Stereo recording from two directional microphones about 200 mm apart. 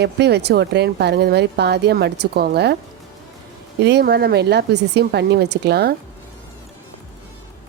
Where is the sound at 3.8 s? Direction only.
55° right (ahead or behind).